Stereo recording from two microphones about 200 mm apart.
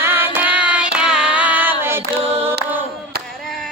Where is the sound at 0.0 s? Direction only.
10° right (ahead or behind).